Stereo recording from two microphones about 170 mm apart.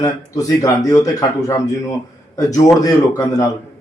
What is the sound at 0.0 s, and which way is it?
A man's voice, 20° left (ahead or behind).